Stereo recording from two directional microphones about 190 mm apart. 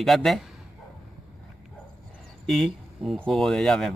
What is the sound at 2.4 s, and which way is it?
Speech, centre (ahead or behind).